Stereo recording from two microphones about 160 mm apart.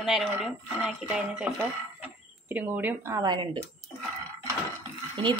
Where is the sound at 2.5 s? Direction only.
10° right (ahead or behind).